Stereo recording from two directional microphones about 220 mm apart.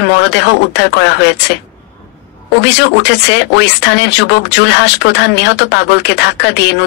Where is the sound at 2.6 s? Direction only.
50° left (ahead or behind).